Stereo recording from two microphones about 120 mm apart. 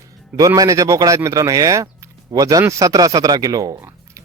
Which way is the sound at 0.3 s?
30° right (ahead or behind).